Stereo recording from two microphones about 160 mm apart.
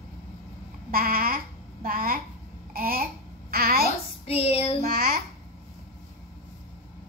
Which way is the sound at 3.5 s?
70° right (ahead or behind).